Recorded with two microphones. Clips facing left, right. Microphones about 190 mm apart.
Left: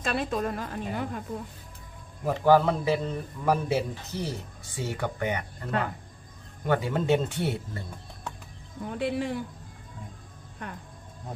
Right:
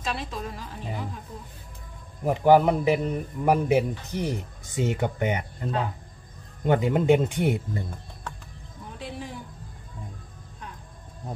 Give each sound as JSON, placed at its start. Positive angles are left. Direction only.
{"t": 0.0, "sound": "a woman's voice", "side_deg": 55}
{"t": 2.2, "sound": "a man's voice", "side_deg": -15}
{"t": 8.8, "sound": "speech", "side_deg": 65}